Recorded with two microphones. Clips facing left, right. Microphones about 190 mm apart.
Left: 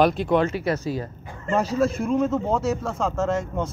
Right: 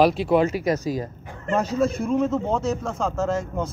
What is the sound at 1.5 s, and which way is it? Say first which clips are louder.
A man's voice: even; centre (ahead or behind).